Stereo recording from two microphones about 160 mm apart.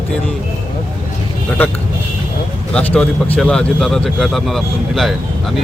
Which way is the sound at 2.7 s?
5° left (ahead or behind).